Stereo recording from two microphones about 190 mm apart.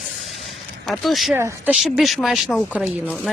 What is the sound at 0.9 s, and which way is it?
Speech, centre (ahead or behind).